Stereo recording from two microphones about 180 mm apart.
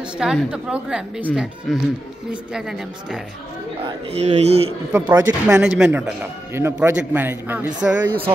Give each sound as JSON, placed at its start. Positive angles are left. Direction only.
{"t": 0.2, "sound": "a woman's voice", "side_deg": -5}
{"t": 3.8, "sound": "speech", "side_deg": -35}
{"t": 5.0, "sound": "speech", "side_deg": -20}
{"t": 5.6, "sound": "a man's voice", "side_deg": -10}